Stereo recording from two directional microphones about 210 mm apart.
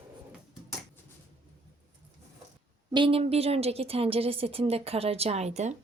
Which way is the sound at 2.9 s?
25° right (ahead or behind).